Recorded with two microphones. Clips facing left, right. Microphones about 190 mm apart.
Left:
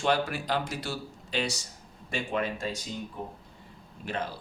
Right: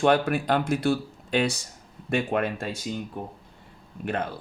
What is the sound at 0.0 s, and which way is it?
Speech, 55° right (ahead or behind).